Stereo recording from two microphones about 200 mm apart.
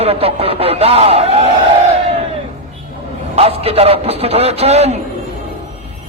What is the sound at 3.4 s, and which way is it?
A man's voice, 30° right (ahead or behind).